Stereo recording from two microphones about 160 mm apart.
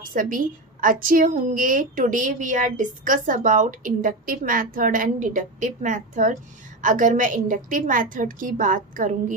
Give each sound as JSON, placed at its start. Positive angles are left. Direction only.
{"t": 0.1, "sound": "a woman's voice", "side_deg": -60}